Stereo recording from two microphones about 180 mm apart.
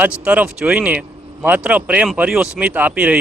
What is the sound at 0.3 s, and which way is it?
A man's voice, 5° right (ahead or behind).